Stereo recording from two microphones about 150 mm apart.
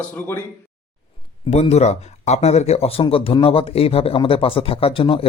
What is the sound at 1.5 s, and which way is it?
Speech, 45° left (ahead or behind).